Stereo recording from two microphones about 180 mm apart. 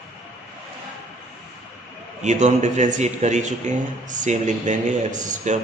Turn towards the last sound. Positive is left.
turn(degrees=-40)  # may be behind; listen again after turning